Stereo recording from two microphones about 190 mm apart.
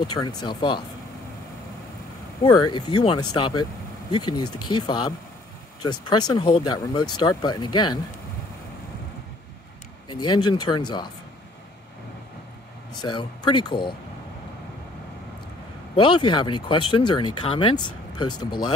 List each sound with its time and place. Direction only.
0.1 s speech: 20° left (ahead or behind)
2.4 s speech: 20° left (ahead or behind)
10.0 s speech: 20° left (ahead or behind)
12.9 s speech: 25° left (ahead or behind)
16.0 s speech: 25° left (ahead or behind)